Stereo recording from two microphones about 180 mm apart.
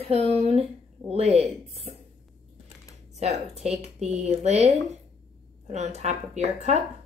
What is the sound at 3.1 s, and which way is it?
Speech, 35° right (ahead or behind).